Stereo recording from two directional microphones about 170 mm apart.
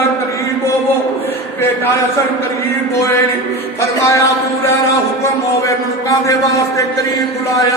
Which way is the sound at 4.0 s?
20° left (ahead or behind).